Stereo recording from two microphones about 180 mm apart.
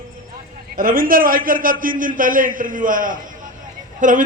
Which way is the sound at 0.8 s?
50° right (ahead or behind).